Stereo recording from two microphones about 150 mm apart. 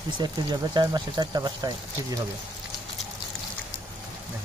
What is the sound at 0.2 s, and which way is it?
Speech, 30° right (ahead or behind).